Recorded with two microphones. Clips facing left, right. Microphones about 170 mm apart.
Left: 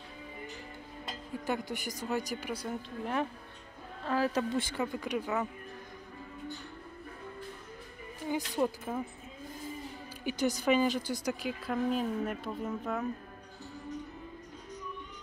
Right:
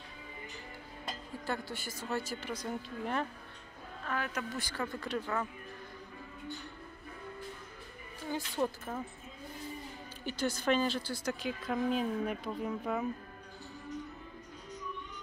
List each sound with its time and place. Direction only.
1.4 s speech: 15° left (ahead or behind)
4.1 s a woman's voice: 30° left (ahead or behind)
4.9 s speech: 15° left (ahead or behind)
8.3 s speech: 10° left (ahead or behind)
10.2 s speech: 15° left (ahead or behind)
11.4 s speech: 5° left (ahead or behind)